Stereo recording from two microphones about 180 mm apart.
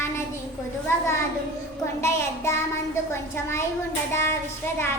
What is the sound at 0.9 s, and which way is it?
A child's voice, 15° left (ahead or behind).